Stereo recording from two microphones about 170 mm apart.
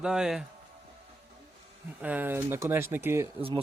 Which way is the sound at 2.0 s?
10° right (ahead or behind).